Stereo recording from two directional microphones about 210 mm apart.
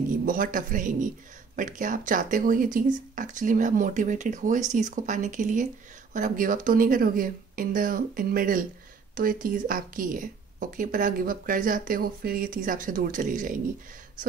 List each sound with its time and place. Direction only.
0.2 s a woman's voice: 40° right (ahead or behind)